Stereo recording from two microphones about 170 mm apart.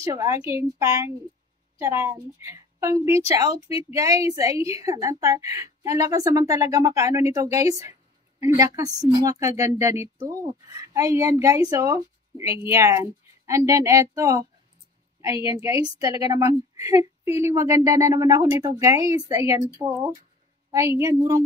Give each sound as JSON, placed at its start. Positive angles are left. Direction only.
{"t": 0.0, "sound": "a woman's voice", "side_deg": -20}